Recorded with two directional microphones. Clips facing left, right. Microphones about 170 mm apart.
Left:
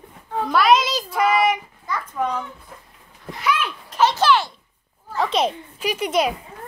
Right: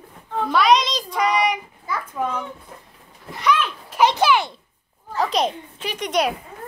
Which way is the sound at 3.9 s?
15° right (ahead or behind).